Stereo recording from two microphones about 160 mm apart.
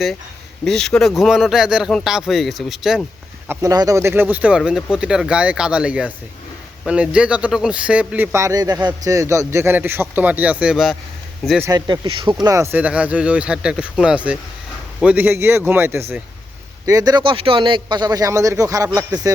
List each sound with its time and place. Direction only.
0.6 s speech: 5° left (ahead or behind)
3.5 s speech: 20° right (ahead or behind); by 10.9 s 5° right (ahead or behind)
11.6 s a man's voice: 25° right (ahead or behind)
12.7 s a man's voice: 10° right (ahead or behind)